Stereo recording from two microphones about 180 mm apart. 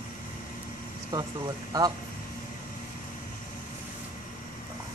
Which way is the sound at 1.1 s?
20° right (ahead or behind).